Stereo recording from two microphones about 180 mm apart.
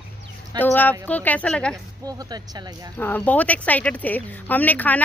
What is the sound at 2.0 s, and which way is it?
Speech, 20° right (ahead or behind).